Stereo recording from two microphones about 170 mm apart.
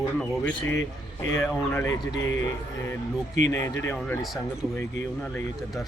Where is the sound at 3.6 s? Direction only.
15° left (ahead or behind).